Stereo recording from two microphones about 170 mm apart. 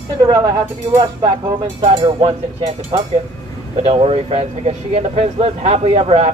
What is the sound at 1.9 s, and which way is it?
Speech, 30° right (ahead or behind).